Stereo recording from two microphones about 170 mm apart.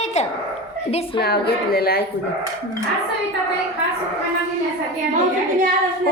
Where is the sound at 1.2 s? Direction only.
70° left (ahead or behind).